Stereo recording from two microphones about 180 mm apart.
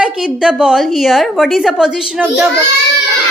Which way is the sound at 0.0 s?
5° right (ahead or behind).